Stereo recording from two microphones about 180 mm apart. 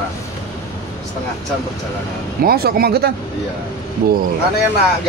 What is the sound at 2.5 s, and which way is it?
Speech, 60° right (ahead or behind).